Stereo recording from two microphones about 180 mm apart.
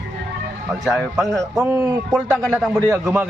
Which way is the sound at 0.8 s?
Centre (ahead or behind).